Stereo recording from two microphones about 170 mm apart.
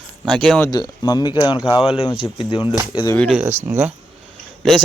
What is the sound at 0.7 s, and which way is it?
Speech, 25° left (ahead or behind).